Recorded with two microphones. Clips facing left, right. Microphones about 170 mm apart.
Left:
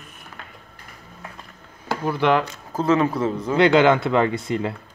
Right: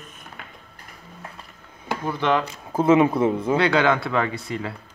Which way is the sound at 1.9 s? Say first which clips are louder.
Left 3 dB; 10° left (ahead or behind).